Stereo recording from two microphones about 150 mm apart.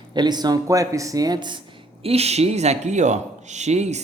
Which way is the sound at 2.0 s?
45° right (ahead or behind).